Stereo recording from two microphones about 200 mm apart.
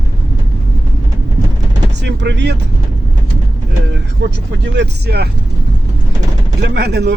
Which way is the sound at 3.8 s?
60° right (ahead or behind).